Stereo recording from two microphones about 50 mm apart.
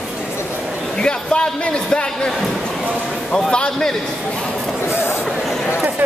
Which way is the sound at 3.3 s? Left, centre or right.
Centre.